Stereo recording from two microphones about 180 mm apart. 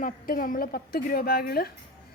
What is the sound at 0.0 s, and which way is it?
A woman's voice, 50° left (ahead or behind).